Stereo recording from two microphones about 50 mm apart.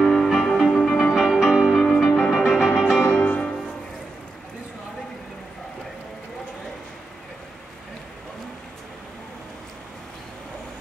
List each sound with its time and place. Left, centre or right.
0.0 s music: centre
1.1 s music: centre
2.0 s music: centre
3.3 s music: left